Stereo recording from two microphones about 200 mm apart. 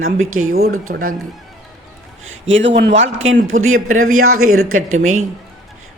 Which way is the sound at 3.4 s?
85° right.